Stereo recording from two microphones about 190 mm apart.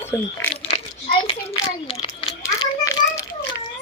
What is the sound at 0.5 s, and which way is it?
Coin, 30° left (ahead or behind).